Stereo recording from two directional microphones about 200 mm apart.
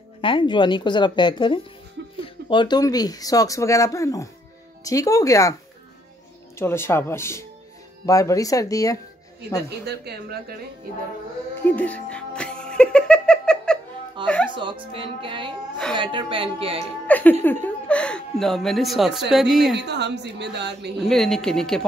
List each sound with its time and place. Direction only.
0.2 s a woman's voice: 25° left (ahead or behind)
6.6 s speech: 10° left (ahead or behind)
9.7 s a woman's voice: 55° right (ahead or behind)
11.7 s music: 5° left (ahead or behind)
14.2 s speech: 5° left (ahead or behind)
14.5 s speech: 25° right (ahead or behind)
17.1 s speech: 10° left (ahead or behind)
19.8 s a woman's voice: 55° right (ahead or behind)
21.0 s speech: centre (ahead or behind)